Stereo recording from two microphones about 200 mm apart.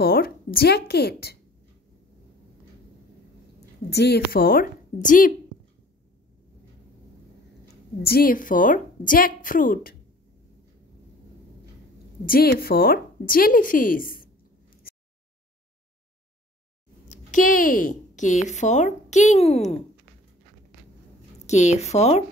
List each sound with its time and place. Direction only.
0.0 s a woman's voice: 50° left (ahead or behind)
3.9 s a woman's voice: 55° left (ahead or behind)
8.0 s speech: 50° left (ahead or behind)
12.3 s speech: 50° left (ahead or behind)
17.1 s speech: 40° left (ahead or behind)
21.5 s a woman's voice: 35° left (ahead or behind)